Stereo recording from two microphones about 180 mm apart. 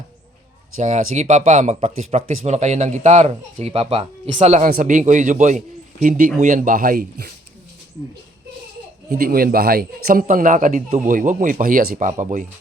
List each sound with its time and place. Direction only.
0.8 s speech: 40° right (ahead or behind)
4.6 s speech: 50° right (ahead or behind)
9.0 s speech: 55° right (ahead or behind)